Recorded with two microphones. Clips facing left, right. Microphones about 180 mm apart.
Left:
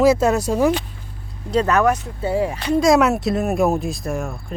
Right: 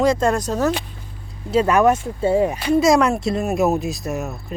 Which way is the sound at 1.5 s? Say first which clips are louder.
Right 1 dB; 10° right (ahead or behind).